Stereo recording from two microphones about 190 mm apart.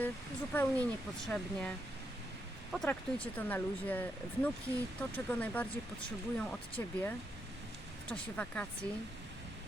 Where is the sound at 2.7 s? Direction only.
5° left (ahead or behind).